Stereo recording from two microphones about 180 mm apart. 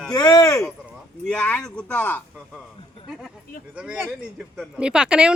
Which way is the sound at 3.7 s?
5° right (ahead or behind).